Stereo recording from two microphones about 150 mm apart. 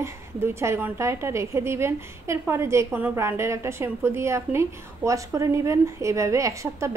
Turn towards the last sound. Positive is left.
turn(degrees=-20)  # may be behind; listen again after turning